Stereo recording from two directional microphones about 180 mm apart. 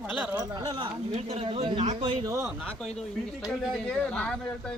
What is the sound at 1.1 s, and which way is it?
Speech, 35° right (ahead or behind).